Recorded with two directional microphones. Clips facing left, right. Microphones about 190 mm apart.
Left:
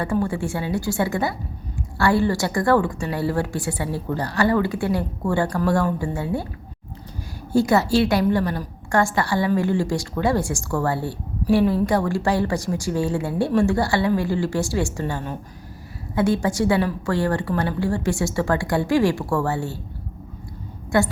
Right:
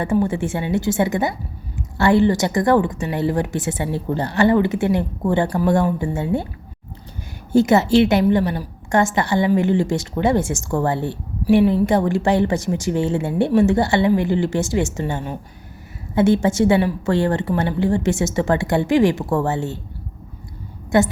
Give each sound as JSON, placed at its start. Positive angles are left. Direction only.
{"t": 0.0, "sound": "a woman's voice", "side_deg": -20}
{"t": 7.5, "sound": "a woman's voice", "side_deg": -20}
{"t": 20.9, "sound": "a woman's voice", "side_deg": -20}